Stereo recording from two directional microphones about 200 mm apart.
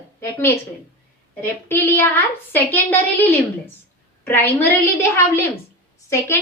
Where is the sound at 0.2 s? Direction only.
10° left (ahead or behind).